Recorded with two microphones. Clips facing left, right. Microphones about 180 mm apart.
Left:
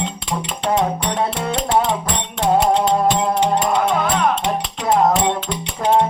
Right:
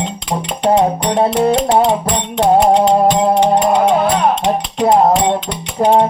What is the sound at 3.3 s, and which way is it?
Music, 30° right (ahead or behind).